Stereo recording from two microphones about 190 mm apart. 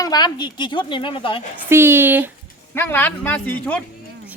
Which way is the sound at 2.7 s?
10° left (ahead or behind).